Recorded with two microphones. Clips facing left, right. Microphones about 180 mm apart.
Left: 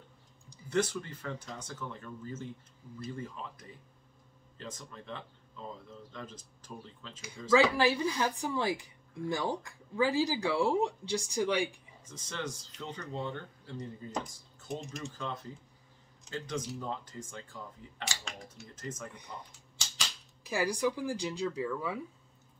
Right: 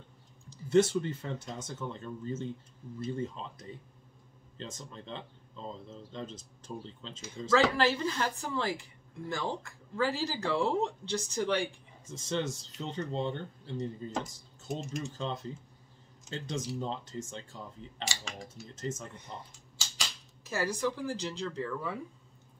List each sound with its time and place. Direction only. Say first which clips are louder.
0.7 s speech: right 6 dB; 25° right (ahead or behind)
7.4 s speech: left 1 dB; 10° left (ahead or behind)
12.1 s speech: right 6 dB; 25° right (ahead or behind)
14.7 s speech: right 3 dB; centre (ahead or behind)
15.1 s speech: right 3 dB; 25° right (ahead or behind)
18.0 s speech: right 2 dB; centre (ahead or behind)
18.8 s speech: right 4 dB; 25° right (ahead or behind)
20.4 s speech: left 1 dB; 15° left (ahead or behind)